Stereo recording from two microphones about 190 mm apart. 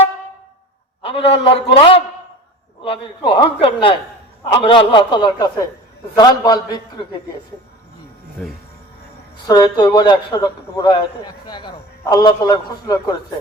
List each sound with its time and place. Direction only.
1.0 s a man's voice: 30° left (ahead or behind)
9.5 s a man's voice: 20° left (ahead or behind)